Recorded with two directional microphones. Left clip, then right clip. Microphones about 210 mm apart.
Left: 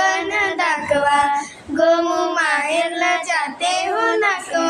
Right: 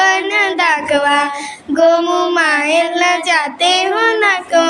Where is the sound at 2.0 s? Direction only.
40° right (ahead or behind).